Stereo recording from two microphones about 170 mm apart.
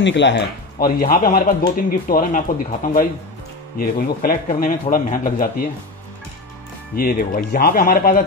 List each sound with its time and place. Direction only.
0.0 s a man's voice: 90° left; by 5.7 s 55° left (ahead or behind)
7.0 s a man's voice: 60° left (ahead or behind)